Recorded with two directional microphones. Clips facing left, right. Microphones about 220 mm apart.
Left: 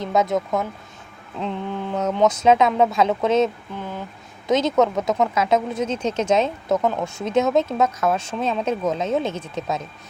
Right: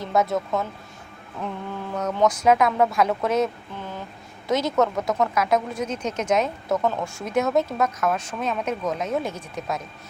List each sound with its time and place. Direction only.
0.0 s speech: 20° left (ahead or behind)